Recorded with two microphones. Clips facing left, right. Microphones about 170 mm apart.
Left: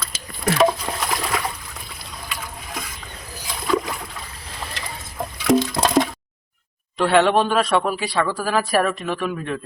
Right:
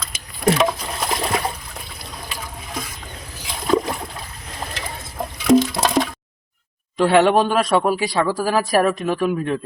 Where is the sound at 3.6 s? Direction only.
35° right (ahead or behind).